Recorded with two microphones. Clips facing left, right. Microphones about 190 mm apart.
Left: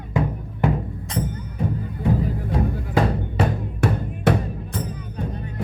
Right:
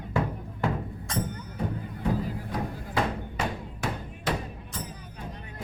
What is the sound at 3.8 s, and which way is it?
Music, 65° left (ahead or behind).